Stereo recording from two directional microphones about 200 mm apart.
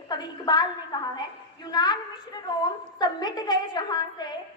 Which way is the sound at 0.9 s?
20° left (ahead or behind).